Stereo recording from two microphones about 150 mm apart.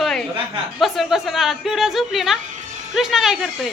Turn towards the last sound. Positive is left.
turn(degrees=-5)  # may be behind; listen again after turning